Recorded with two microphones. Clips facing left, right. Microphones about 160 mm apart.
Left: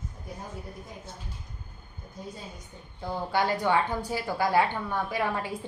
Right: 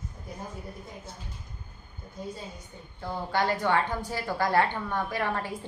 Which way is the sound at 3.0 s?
10° left (ahead or behind).